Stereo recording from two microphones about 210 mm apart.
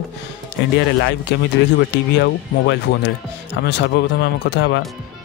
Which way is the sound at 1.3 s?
55° left (ahead or behind).